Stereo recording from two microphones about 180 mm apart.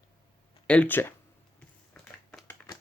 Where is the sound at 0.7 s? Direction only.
10° left (ahead or behind).